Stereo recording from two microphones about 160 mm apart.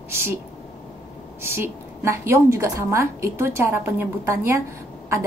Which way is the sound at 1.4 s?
15° right (ahead or behind).